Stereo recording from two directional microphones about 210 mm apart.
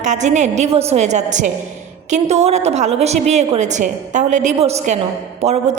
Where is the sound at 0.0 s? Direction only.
35° right (ahead or behind).